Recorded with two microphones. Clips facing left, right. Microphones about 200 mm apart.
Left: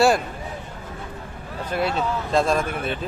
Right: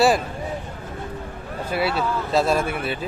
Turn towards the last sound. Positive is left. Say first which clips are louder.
# right 1 dB
turn(degrees=-5)  # may be behind; listen again after turning